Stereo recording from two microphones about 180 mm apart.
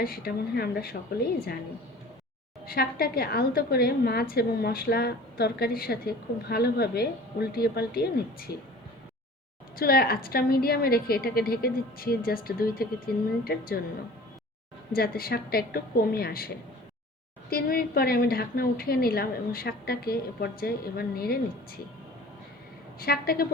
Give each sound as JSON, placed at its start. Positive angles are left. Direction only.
{"t": 0.0, "sound": "a woman's voice", "side_deg": 60}
{"t": 2.6, "sound": "a woman's voice", "side_deg": 55}
{"t": 9.7, "sound": "a woman's voice", "side_deg": 55}
{"t": 14.9, "sound": "a woman's voice", "side_deg": 60}
{"t": 17.5, "sound": "a woman's voice", "side_deg": 55}
{"t": 23.0, "sound": "a woman's voice", "side_deg": 55}